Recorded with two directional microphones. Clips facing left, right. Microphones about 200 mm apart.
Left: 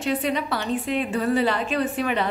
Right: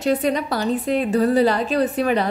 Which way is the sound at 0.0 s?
40° right (ahead or behind).